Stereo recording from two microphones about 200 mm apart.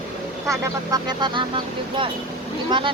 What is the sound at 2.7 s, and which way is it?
Speech, 25° right (ahead or behind).